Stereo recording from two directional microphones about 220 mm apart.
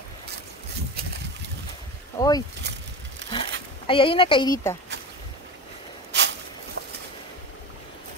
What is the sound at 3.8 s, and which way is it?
Speech, 25° left (ahead or behind).